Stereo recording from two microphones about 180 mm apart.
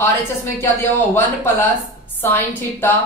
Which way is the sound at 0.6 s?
10° left (ahead or behind).